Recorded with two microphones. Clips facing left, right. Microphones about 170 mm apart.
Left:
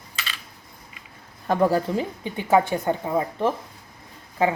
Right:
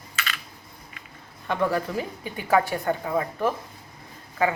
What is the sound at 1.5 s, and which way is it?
Speech, 35° left (ahead or behind).